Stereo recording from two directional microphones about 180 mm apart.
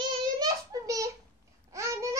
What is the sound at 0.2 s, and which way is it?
Child singing, 20° right (ahead or behind).